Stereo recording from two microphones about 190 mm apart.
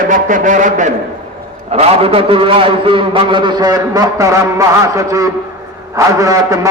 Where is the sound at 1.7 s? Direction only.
30° right (ahead or behind).